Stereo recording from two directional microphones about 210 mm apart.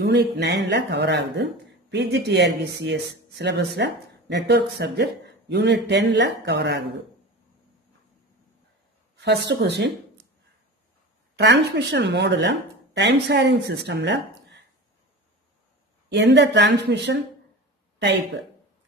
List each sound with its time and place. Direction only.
0.0 s speech: 55° right (ahead or behind)
9.1 s speech: 55° right (ahead or behind)
11.3 s speech: 55° right (ahead or behind)
16.1 s speech: 55° right (ahead or behind)